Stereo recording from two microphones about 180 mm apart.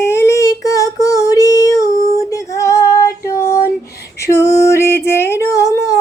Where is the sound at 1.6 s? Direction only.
20° left (ahead or behind).